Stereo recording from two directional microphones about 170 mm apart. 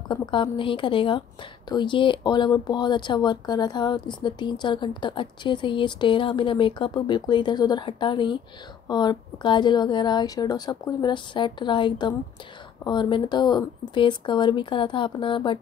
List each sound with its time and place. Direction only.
0.1 s speech: 30° left (ahead or behind)